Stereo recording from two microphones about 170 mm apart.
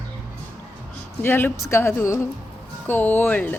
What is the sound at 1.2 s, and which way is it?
Speech, 10° left (ahead or behind).